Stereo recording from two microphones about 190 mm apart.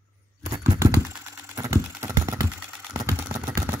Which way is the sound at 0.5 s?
20° right (ahead or behind).